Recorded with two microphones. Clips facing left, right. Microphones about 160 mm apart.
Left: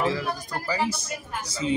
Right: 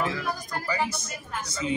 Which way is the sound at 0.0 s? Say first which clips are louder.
Left 3 dB; 30° left (ahead or behind).